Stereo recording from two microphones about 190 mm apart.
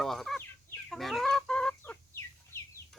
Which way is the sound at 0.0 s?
Centre (ahead or behind).